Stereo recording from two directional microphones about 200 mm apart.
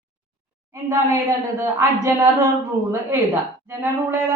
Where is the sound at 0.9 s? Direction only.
15° right (ahead or behind).